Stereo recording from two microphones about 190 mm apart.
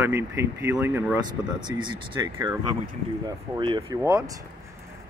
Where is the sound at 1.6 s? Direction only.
25° right (ahead or behind).